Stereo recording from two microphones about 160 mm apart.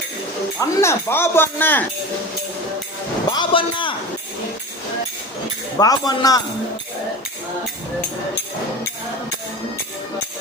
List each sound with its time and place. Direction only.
0.6 s speech: 15° left (ahead or behind)
3.3 s a man's voice: 30° left (ahead or behind)
5.8 s speech: 25° left (ahead or behind)